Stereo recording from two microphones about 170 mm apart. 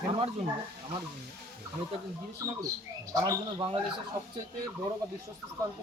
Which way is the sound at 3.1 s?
20° right (ahead or behind).